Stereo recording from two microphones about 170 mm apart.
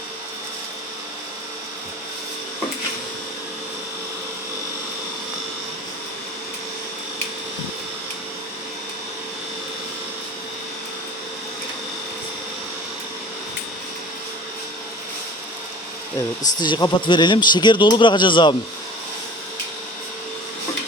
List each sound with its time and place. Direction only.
16.6 s speech: 25° left (ahead or behind)